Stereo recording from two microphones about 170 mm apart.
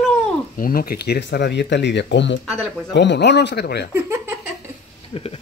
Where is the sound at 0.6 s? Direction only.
60° left (ahead or behind); by 3.9 s 75° left (ahead or behind).